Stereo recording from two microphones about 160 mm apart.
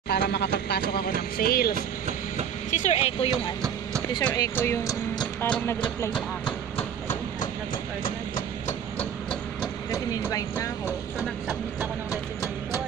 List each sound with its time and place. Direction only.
0.1 s a sound: 90° left; by 1.8 s 70° left (ahead or behind)
2.7 s a sound: 45° left (ahead or behind)
4.4 s speech: 20° left (ahead or behind)
5.4 s music: 15° left (ahead or behind)
8.9 s hammer: 5° left (ahead or behind)
10.2 s speech: 20° left (ahead or behind)
10.9 s speech: 5° right (ahead or behind)